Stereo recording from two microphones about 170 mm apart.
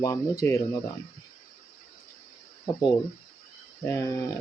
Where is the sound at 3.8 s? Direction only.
15° left (ahead or behind).